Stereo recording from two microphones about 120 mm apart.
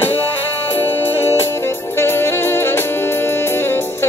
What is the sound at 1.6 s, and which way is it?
Music, 20° left (ahead or behind).